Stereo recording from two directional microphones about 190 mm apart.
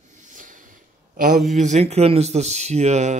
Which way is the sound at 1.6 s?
35° right (ahead or behind).